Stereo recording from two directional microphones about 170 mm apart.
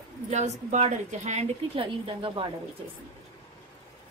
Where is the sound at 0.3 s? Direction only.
45° right (ahead or behind).